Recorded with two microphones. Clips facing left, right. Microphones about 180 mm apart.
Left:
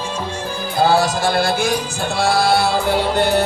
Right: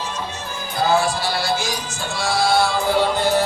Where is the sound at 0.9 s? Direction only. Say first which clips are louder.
Left 3 dB; 45° left (ahead or behind).